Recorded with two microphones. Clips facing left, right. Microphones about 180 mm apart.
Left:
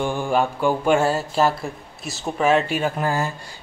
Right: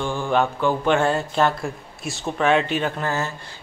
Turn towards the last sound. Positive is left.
turn(degrees=10)  # may be behind; listen again after turning